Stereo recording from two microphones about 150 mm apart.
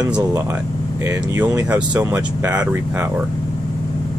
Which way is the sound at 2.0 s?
20° right (ahead or behind).